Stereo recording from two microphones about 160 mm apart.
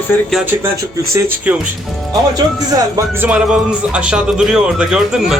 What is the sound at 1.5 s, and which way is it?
Speech, 10° right (ahead or behind).